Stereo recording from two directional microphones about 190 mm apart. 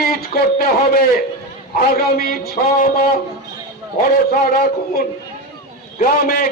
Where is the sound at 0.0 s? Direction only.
55° left (ahead or behind).